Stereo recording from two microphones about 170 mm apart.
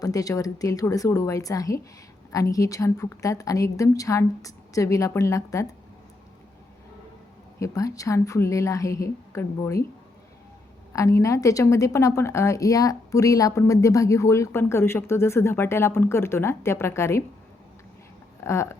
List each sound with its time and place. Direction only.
0.0 s a woman's voice: 20° left (ahead or behind)
7.6 s a woman's voice: 20° left (ahead or behind)
10.9 s a woman's voice: 20° left (ahead or behind)
18.4 s a woman's voice: 15° left (ahead or behind)